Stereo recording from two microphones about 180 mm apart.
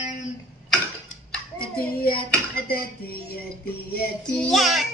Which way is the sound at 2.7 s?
55° left (ahead or behind).